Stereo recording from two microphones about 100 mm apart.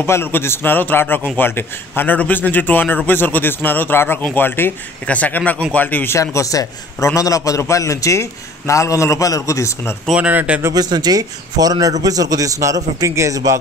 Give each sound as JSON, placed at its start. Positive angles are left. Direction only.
{"t": 0.0, "sound": "a man's voice", "side_deg": 25}
{"t": 6.3, "sound": "a man's voice", "side_deg": 35}
{"t": 10.1, "sound": "speech", "side_deg": -10}
{"t": 10.7, "sound": "a man's voice", "side_deg": -40}